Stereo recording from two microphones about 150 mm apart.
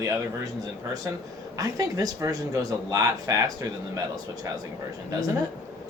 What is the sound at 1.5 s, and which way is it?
Speech, 25° right (ahead or behind).